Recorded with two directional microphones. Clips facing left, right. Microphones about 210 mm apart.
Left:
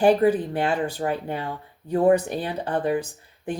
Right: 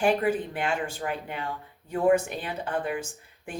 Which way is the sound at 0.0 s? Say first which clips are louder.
Left 6 dB; 35° left (ahead or behind).